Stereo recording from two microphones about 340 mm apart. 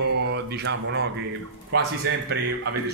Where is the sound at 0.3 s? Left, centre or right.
Right.